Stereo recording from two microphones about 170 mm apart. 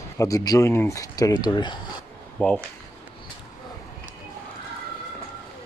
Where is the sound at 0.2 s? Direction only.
20° left (ahead or behind).